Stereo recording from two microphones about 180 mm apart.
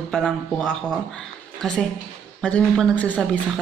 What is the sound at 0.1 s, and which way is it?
A woman's voice, 5° left (ahead or behind).